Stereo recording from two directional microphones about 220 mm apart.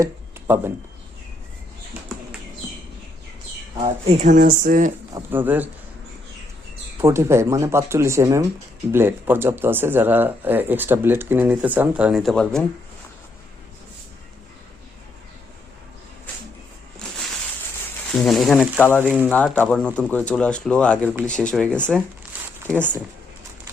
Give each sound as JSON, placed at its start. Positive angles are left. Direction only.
{"t": 0.0, "sound": "a sound", "side_deg": -10}
{"t": 3.8, "sound": "speech", "side_deg": -35}
{"t": 5.1, "sound": "speech", "side_deg": -10}
{"t": 7.0, "sound": "speech", "side_deg": -10}
{"t": 18.1, "sound": "speech", "side_deg": 0}
{"t": 19.0, "sound": "speech", "side_deg": -5}
{"t": 19.3, "sound": "speech", "side_deg": 5}
{"t": 22.3, "sound": "a sound", "side_deg": -10}